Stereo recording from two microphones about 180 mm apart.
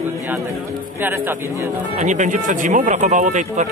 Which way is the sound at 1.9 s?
45° right (ahead or behind).